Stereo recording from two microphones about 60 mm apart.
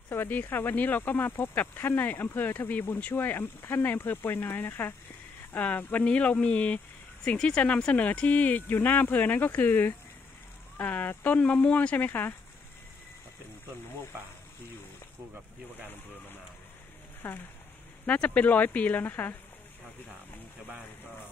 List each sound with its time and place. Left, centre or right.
0.1 s speech: left
17.2 s speech: left
18.0 s speech: left